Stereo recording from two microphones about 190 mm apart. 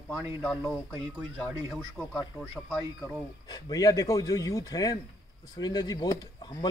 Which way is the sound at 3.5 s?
20° left (ahead or behind).